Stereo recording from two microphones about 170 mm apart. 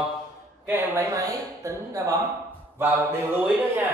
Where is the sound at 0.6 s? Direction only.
15° right (ahead or behind).